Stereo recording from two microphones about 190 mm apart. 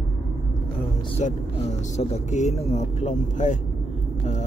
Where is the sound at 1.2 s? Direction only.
35° left (ahead or behind).